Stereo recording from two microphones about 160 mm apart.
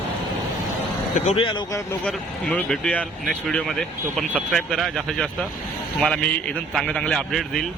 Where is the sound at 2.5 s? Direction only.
10° left (ahead or behind).